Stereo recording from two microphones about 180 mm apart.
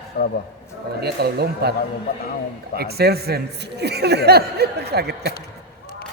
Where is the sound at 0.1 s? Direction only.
55° left (ahead or behind).